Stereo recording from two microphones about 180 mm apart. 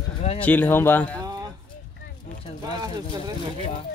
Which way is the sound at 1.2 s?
20° right (ahead or behind).